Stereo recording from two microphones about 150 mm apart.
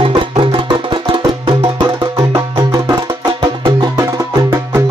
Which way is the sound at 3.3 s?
30° right (ahead or behind).